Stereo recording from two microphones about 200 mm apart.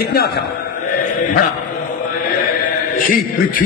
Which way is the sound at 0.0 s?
50° left (ahead or behind).